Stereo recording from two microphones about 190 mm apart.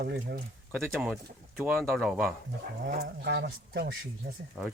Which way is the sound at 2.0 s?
Centre (ahead or behind).